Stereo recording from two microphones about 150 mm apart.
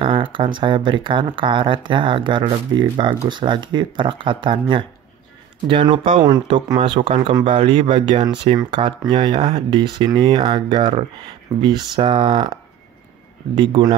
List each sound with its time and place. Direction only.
0.0 s speech: 35° right (ahead or behind)
13.6 s speech: 30° right (ahead or behind)